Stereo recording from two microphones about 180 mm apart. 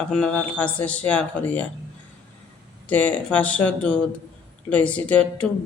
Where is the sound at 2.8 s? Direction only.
10° left (ahead or behind).